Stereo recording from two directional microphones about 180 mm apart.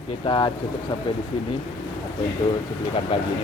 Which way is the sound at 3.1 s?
30° left (ahead or behind).